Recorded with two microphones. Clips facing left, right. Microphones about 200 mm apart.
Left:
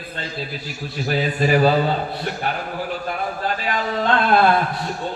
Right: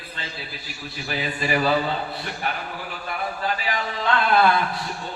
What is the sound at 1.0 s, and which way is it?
Speech, 45° left (ahead or behind).